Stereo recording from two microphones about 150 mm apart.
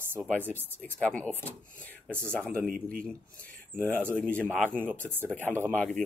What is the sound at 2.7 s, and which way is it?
Speech, 70° right (ahead or behind).